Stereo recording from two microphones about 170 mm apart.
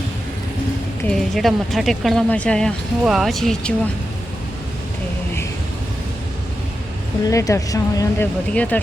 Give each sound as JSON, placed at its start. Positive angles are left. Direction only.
{"t": 1.0, "sound": "speech", "side_deg": 0}
{"t": 7.3, "sound": "speech", "side_deg": 20}